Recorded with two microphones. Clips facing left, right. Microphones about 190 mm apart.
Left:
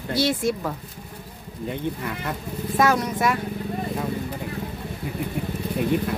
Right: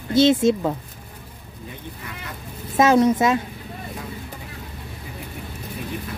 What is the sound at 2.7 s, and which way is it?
Speech, 25° right (ahead or behind).